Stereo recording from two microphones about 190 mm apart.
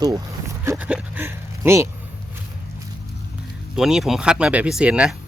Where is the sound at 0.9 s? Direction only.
5° right (ahead or behind).